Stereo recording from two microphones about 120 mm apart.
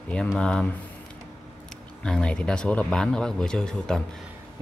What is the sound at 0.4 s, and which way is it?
Speech, 5° left (ahead or behind).